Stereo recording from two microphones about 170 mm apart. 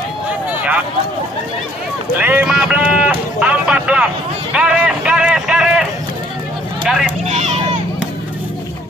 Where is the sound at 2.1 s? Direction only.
10° right (ahead or behind).